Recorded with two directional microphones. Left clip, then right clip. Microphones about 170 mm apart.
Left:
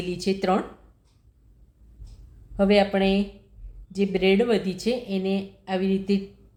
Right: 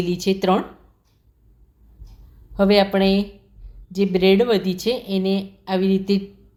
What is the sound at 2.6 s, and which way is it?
Speech, 15° right (ahead or behind).